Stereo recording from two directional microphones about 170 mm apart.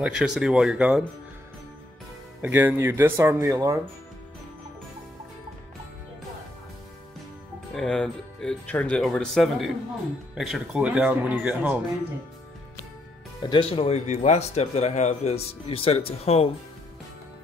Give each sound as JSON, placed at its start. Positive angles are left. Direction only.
{"t": 0.0, "sound": "speech", "side_deg": -5}
{"t": 2.4, "sound": "speech", "side_deg": -10}
{"t": 7.7, "sound": "speech", "side_deg": 5}
{"t": 13.4, "sound": "speech", "side_deg": 30}